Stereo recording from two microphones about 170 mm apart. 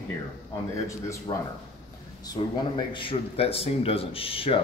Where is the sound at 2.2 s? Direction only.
25° left (ahead or behind).